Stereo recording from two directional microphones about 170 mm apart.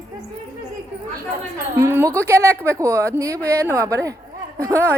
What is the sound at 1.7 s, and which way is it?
A woman's voice, 10° right (ahead or behind).